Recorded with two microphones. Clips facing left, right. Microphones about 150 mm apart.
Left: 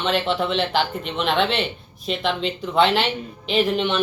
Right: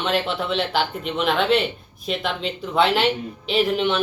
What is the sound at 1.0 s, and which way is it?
Speech, 5° right (ahead or behind).